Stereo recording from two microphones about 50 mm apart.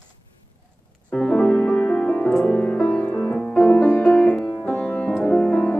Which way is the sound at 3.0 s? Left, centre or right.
Left.